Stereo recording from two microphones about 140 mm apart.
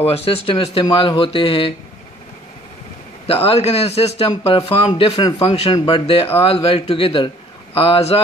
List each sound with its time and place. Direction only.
0.0 s speech: 45° left (ahead or behind)
3.4 s a man's voice: 45° left (ahead or behind)